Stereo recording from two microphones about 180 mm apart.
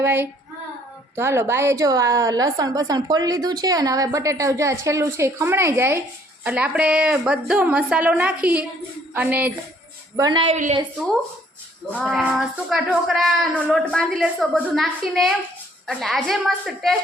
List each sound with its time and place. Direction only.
0.0 s a woman's voice: 10° right (ahead or behind)
10.2 s a woman's voice: 25° right (ahead or behind)
10.5 s a woman's voice: 40° right (ahead or behind)
12.0 s speech: 5° right (ahead or behind)